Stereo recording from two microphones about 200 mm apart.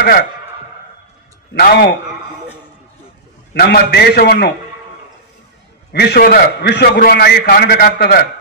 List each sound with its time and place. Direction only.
1.5 s a man's voice: 55° left (ahead or behind)
3.5 s a man's voice: 55° left (ahead or behind)
5.9 s a man's voice: 50° left (ahead or behind)